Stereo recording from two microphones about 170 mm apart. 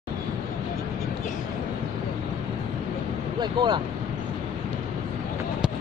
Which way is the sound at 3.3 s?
25° right (ahead or behind).